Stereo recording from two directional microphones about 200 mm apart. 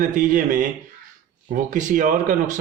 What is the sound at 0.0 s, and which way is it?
A man's voice, 40° right (ahead or behind).